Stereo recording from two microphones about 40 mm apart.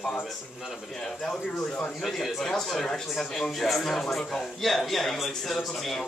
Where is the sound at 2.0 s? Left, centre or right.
Centre.